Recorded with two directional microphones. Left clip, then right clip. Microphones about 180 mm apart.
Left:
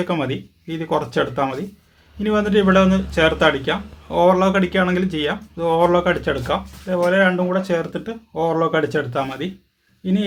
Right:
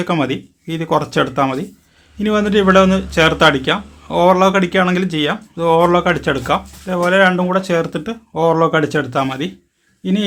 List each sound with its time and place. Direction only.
0.0 s speech: 35° right (ahead or behind)